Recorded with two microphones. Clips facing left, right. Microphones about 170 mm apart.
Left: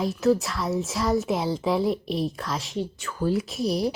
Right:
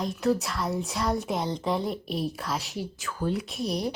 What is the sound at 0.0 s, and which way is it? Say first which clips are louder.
Speech: left 4 dB; centre (ahead or behind).